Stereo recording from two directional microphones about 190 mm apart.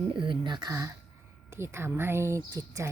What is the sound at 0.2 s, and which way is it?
Speech, 25° right (ahead or behind).